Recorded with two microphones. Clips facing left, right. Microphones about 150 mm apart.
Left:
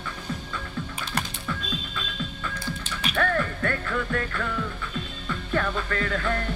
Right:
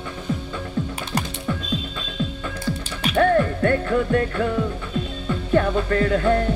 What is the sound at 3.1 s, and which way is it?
Music, 30° right (ahead or behind).